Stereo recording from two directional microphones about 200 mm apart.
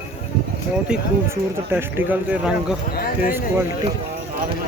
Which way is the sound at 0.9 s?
10° right (ahead or behind).